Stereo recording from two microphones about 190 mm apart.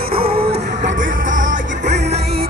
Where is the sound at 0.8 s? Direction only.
85° right.